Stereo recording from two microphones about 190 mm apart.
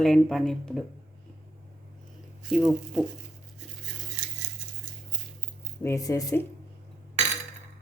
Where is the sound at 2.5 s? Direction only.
Centre (ahead or behind).